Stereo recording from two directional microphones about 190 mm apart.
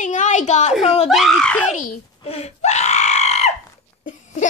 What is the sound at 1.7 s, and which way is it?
Screaming, 35° left (ahead or behind).